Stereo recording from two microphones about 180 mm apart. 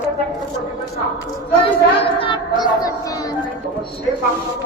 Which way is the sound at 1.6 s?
30° left (ahead or behind).